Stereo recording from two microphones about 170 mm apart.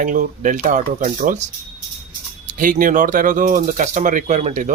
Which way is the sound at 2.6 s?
55° right (ahead or behind).